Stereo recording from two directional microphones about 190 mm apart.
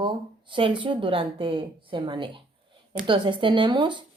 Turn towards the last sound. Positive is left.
turn(degrees=-25)  # may be behind; listen again after turning